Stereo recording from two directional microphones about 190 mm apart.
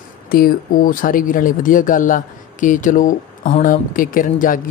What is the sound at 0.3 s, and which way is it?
Speech, 50° left (ahead or behind).